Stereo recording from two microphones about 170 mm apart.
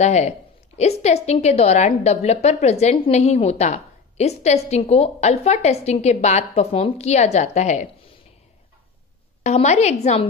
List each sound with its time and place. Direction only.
0.0 s a woman's voice: 40° left (ahead or behind)
9.4 s a woman's voice: 40° left (ahead or behind)